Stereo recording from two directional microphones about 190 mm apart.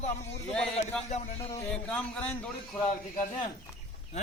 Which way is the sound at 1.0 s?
35° left (ahead or behind).